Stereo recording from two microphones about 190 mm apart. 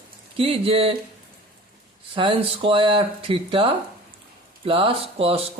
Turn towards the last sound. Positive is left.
turn(degrees=-30)  # may be behind; listen again after turning